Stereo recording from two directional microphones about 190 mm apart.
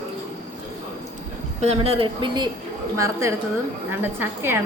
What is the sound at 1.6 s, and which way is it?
A woman's voice, 35° right (ahead or behind).